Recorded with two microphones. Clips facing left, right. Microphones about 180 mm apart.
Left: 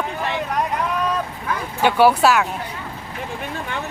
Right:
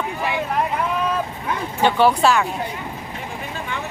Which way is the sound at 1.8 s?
5° left (ahead or behind).